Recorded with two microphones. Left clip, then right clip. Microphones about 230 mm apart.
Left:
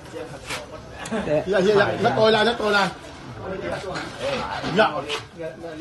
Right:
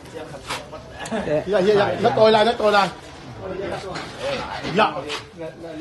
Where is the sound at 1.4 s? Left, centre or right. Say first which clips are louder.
Right 1 dB; right.